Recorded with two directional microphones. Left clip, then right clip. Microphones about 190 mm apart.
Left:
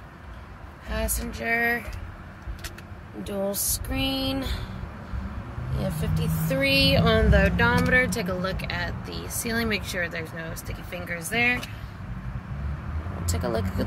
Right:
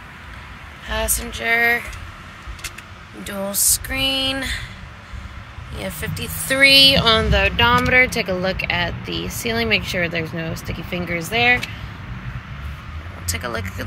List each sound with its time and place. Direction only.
0.8 s speech: 5° right (ahead or behind)
3.3 s a sound: 5° left (ahead or behind)
5.8 s speech: centre (ahead or behind)
8.0 s speech: 15° right (ahead or behind)